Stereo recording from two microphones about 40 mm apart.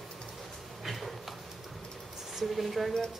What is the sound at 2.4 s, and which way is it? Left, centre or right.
Speech, centre.